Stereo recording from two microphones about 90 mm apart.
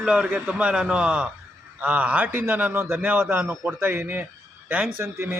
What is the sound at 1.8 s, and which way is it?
A man's voice, 15° right (ahead or behind).